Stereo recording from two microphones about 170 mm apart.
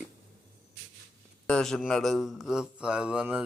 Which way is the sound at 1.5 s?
5° left (ahead or behind).